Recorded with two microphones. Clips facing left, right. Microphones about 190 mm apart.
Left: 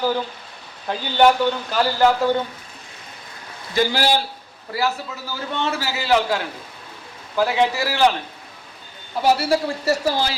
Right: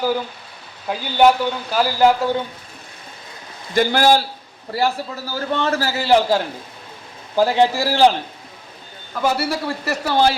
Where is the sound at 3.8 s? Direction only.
50° right (ahead or behind).